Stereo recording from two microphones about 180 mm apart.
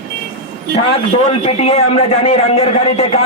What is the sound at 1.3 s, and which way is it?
Speech, 35° left (ahead or behind).